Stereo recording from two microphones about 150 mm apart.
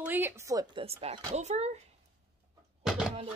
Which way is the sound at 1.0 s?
45° right (ahead or behind).